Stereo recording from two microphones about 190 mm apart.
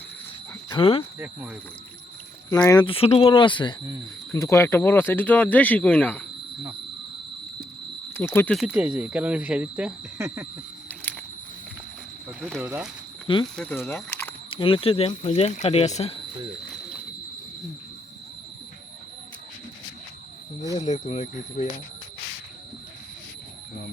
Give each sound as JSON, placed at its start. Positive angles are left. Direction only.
{"t": 0.8, "sound": "speech", "side_deg": 30}
{"t": 1.2, "sound": "speech", "side_deg": -10}
{"t": 2.6, "sound": "speech", "side_deg": 25}
{"t": 4.3, "sound": "speech", "side_deg": 15}
{"t": 8.1, "sound": "speech", "side_deg": 10}
{"t": 8.5, "sound": "speech", "side_deg": -5}
{"t": 12.4, "sound": "speech", "side_deg": 0}
{"t": 13.6, "sound": "speech", "side_deg": 10}
{"t": 14.5, "sound": "speech", "side_deg": 30}
{"t": 20.8, "sound": "speech", "side_deg": 40}